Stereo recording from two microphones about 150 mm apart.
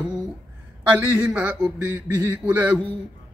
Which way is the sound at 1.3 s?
10° right (ahead or behind).